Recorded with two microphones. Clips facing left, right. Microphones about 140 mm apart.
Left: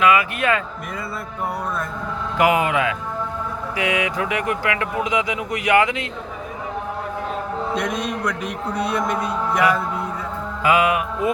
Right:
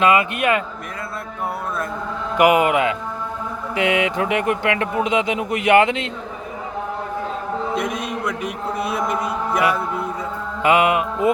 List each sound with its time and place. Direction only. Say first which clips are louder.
0.0 s speech: right 1 dB; 25° right (ahead or behind)
2.4 s speech: right 3 dB; 20° right (ahead or behind)
7.8 s a man's voice: even; 5° right (ahead or behind)
10.6 s speech: right 2 dB; 25° right (ahead or behind)